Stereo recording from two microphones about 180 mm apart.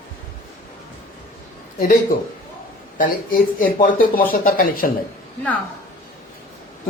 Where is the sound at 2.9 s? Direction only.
50° left (ahead or behind).